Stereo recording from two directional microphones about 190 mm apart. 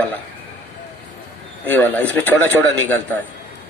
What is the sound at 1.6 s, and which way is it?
A man's voice, 10° left (ahead or behind).